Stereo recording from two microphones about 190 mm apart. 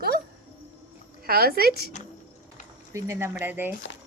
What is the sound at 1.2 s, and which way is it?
Speech, 50° right (ahead or behind).